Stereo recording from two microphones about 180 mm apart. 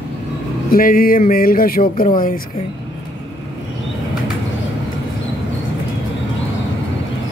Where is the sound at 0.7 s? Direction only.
50° left (ahead or behind).